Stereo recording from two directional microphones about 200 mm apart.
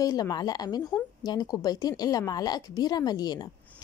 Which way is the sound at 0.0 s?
20° left (ahead or behind).